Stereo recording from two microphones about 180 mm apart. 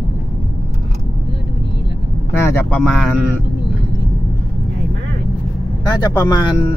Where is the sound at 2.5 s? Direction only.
15° left (ahead or behind).